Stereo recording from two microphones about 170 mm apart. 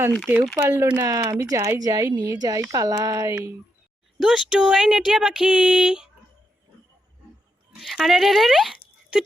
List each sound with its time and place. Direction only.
0.3 s speech: 10° right (ahead or behind)
4.2 s speech: 5° right (ahead or behind)
7.8 s speech: centre (ahead or behind)